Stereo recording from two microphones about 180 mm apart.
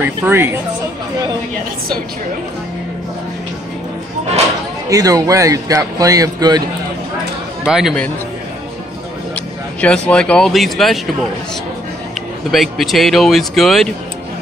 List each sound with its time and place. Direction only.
0.0 s speech: 10° right (ahead or behind)
4.8 s speech: 20° right (ahead or behind)
7.6 s speech: centre (ahead or behind)
9.8 s speech: 5° left (ahead or behind)
12.4 s speech: centre (ahead or behind)